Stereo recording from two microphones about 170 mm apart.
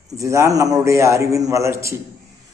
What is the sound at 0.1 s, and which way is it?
A man's voice, 20° right (ahead or behind).